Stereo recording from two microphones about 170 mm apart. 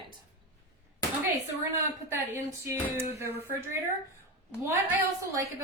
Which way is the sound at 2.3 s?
15° right (ahead or behind).